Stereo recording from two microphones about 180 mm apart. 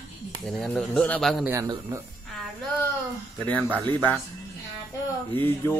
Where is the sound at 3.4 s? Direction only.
10° left (ahead or behind).